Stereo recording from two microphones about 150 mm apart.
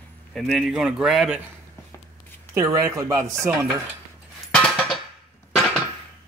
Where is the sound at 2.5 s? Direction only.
20° right (ahead or behind).